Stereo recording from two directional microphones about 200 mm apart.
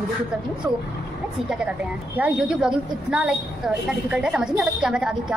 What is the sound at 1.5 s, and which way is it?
A woman's voice, 5° right (ahead or behind).